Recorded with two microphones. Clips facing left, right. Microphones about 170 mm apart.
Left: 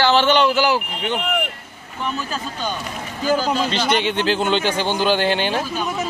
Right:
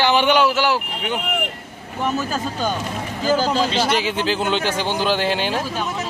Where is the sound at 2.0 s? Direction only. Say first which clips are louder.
Right 4 dB; 45° right (ahead or behind).